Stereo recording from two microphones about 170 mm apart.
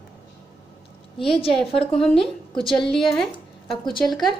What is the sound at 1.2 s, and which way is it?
Speech, 30° left (ahead or behind).